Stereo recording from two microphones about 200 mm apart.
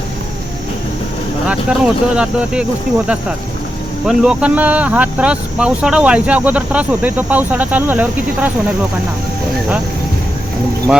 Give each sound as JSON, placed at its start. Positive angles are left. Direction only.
{"t": 1.5, "sound": "speech", "side_deg": -5}
{"t": 4.0, "sound": "speech", "side_deg": -5}